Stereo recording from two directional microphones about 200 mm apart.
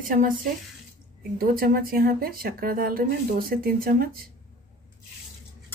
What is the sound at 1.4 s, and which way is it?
Speech, 50° right (ahead or behind).